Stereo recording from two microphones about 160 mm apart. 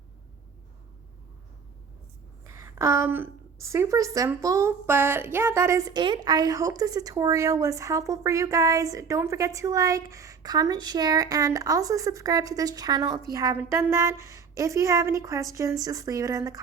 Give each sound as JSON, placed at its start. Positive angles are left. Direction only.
{"t": 2.4, "sound": "a woman's voice", "side_deg": -20}